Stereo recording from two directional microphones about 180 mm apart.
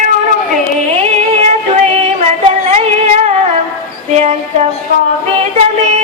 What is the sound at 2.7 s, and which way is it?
Female singing, 35° right (ahead or behind).